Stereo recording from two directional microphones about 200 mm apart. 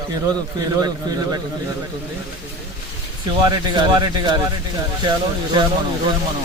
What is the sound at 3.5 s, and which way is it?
Speech, 20° right (ahead or behind).